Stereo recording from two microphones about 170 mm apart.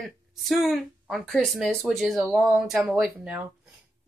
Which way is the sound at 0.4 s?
Centre (ahead or behind).